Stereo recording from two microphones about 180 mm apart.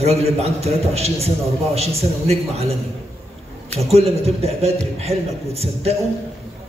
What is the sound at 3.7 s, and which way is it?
A man's voice, 35° right (ahead or behind).